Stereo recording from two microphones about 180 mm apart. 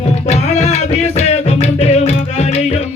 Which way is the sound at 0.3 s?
40° left (ahead or behind).